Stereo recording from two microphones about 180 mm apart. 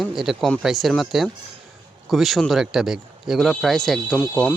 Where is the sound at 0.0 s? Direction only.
Centre (ahead or behind).